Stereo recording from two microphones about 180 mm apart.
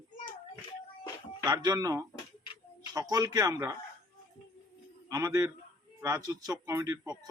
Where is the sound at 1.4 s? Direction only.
20° right (ahead or behind).